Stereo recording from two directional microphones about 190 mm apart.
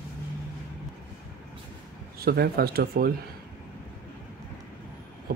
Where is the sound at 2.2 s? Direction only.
55° right (ahead or behind).